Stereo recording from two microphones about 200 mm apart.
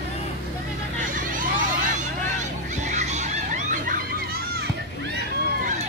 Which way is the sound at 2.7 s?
35° right (ahead or behind).